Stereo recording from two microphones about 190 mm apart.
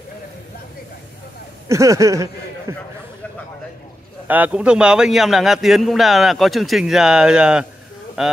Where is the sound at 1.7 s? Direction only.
15° right (ahead or behind).